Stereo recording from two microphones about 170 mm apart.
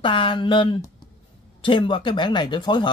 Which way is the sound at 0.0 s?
30° left (ahead or behind).